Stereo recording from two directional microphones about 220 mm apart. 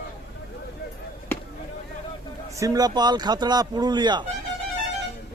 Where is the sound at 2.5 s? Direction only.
15° right (ahead or behind).